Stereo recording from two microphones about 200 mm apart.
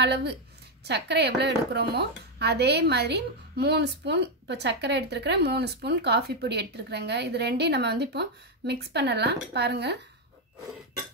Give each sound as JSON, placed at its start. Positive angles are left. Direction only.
{"t": 0.0, "sound": "speech", "side_deg": -60}